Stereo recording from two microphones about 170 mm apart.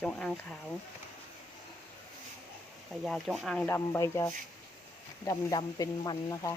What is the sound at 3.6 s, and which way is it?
Speech, 15° left (ahead or behind).